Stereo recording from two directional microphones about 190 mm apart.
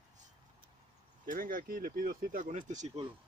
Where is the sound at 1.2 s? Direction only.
45° right (ahead or behind).